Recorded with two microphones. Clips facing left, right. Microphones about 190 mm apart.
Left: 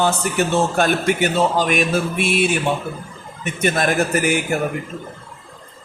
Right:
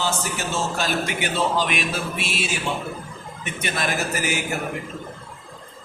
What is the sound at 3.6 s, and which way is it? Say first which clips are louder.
Speech: left 8 dB; 50° left (ahead or behind).